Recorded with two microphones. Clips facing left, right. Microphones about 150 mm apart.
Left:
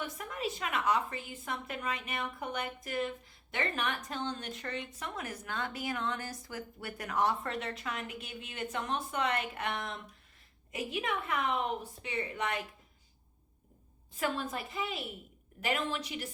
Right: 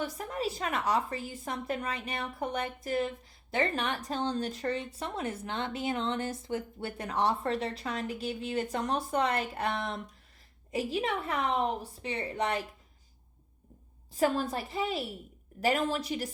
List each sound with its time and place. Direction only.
0.0 s speech: 35° right (ahead or behind)
14.1 s speech: 35° right (ahead or behind)